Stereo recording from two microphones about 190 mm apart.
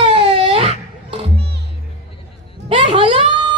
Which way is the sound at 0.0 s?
30° right (ahead or behind).